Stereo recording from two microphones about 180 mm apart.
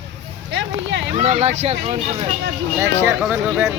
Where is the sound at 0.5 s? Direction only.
85° right.